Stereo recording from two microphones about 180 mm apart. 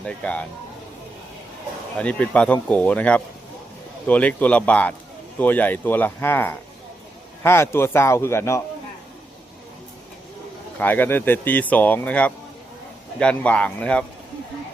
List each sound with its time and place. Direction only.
0.0 s speech: 5° left (ahead or behind)
2.0 s speech: 5° left (ahead or behind)
10.8 s speech: 10° left (ahead or behind)